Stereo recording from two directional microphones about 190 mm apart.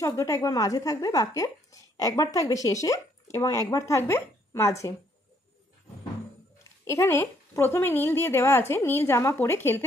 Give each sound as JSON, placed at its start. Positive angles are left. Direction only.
{"t": 0.0, "sound": "a woman's voice", "side_deg": 15}
{"t": 6.8, "sound": "a woman's voice", "side_deg": 15}